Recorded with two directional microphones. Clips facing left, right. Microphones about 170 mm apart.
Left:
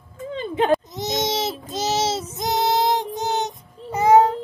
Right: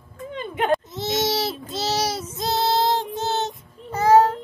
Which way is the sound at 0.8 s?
20° left (ahead or behind).